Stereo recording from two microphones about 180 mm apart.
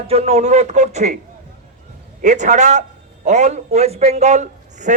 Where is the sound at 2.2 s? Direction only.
40° right (ahead or behind).